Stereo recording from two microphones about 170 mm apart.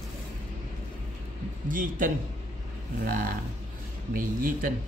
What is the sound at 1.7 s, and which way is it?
Speech, 55° right (ahead or behind).